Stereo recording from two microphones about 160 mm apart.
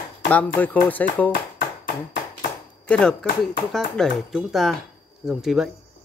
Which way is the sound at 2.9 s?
5° left (ahead or behind).